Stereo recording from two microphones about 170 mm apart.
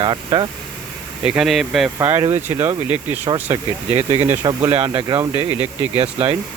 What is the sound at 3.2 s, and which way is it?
Speech, 35° right (ahead or behind).